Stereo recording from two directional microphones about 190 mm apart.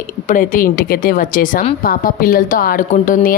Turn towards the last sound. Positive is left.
turn(degrees=45)  # may be behind; listen again after turning